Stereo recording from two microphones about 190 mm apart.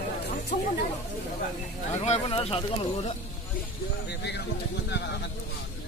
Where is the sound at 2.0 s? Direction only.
30° left (ahead or behind).